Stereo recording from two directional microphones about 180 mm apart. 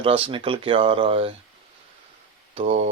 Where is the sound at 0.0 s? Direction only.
30° right (ahead or behind).